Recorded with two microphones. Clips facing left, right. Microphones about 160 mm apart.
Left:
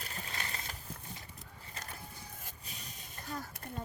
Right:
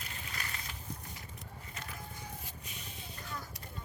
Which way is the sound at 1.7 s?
35° left (ahead or behind).